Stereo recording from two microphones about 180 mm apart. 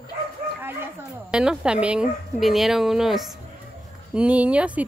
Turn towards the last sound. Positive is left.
turn(degrees=-5)  # may be behind; listen again after turning